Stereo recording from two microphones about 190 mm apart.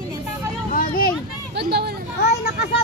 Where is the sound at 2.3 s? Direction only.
55° left (ahead or behind).